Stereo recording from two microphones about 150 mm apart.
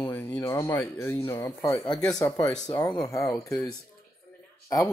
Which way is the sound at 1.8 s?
30° left (ahead or behind).